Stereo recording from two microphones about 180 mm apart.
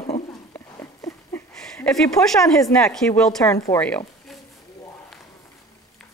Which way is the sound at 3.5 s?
20° left (ahead or behind).